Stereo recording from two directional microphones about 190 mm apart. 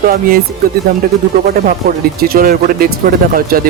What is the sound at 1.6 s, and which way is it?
Speech, 50° right (ahead or behind).